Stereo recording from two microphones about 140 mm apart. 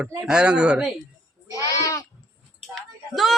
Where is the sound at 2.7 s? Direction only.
Centre (ahead or behind).